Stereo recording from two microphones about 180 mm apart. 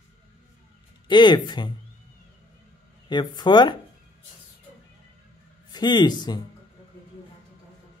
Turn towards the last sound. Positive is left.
turn(degrees=25)  # may be behind; listen again after turning